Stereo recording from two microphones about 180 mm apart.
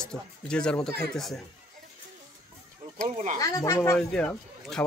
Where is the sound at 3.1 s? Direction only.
45° right (ahead or behind).